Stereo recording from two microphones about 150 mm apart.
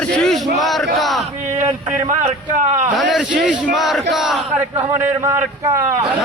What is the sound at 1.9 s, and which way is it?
A man's voice, 55° right (ahead or behind).